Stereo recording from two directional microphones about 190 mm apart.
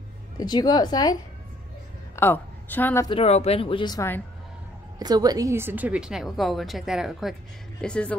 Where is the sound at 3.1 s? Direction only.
35° left (ahead or behind); by 4.2 s 15° left (ahead or behind).